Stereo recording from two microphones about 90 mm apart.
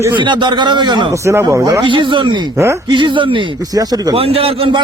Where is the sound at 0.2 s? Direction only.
60° right (ahead or behind).